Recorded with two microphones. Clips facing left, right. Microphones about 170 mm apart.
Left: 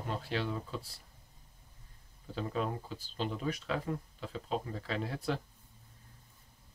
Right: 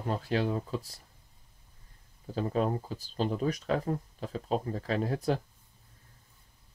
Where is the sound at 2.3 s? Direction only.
40° right (ahead or behind).